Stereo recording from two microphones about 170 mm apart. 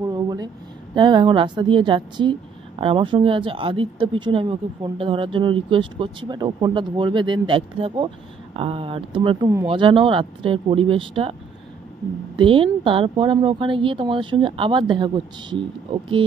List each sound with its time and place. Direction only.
0.0 s a sound: 20° right (ahead or behind)
0.9 s a woman's voice: 25° right (ahead or behind)
12.4 s speech: 30° right (ahead or behind)